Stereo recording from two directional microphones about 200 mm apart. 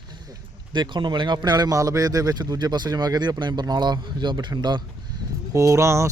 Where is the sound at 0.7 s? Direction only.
20° right (ahead or behind).